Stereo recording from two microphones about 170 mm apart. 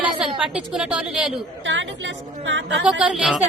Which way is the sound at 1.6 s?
90° right.